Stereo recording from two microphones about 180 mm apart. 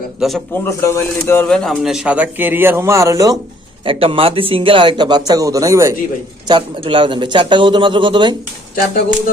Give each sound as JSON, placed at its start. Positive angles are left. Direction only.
{"t": 0.2, "sound": "a man's voice", "side_deg": 0}
{"t": 0.5, "sound": "speech", "side_deg": 15}
{"t": 1.5, "sound": "a man's voice", "side_deg": 0}
{"t": 3.8, "sound": "speech", "side_deg": -30}
{"t": 6.5, "sound": "speech", "side_deg": -30}